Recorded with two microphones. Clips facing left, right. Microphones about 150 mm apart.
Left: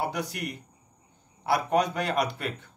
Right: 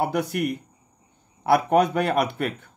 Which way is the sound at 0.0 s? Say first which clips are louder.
Right 7 dB; 55° right (ahead or behind).